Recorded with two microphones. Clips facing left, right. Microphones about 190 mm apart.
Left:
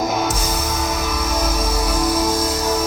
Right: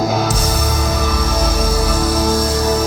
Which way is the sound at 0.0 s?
35° right (ahead or behind).